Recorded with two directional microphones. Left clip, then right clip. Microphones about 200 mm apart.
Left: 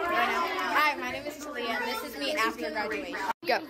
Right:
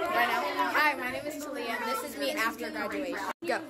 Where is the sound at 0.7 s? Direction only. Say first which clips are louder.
Left 2 dB; 20° right (ahead or behind).